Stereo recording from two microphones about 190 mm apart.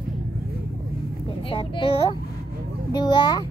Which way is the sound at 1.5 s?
30° left (ahead or behind).